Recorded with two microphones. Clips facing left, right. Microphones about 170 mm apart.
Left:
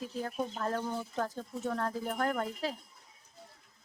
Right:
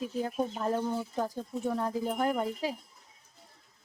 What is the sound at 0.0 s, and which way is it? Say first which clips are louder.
Speech: right 4 dB; 15° right (ahead or behind).